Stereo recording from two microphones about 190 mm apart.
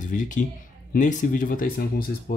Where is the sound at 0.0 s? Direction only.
45° left (ahead or behind).